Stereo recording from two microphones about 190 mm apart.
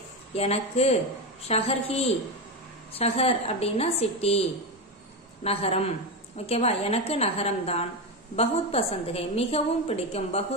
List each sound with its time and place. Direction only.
0.3 s a woman's voice: 30° left (ahead or behind)